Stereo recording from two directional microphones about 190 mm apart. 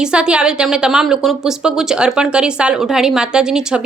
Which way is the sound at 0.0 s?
5° right (ahead or behind).